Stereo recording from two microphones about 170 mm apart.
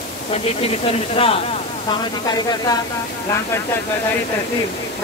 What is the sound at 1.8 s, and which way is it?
Speech, 25° left (ahead or behind).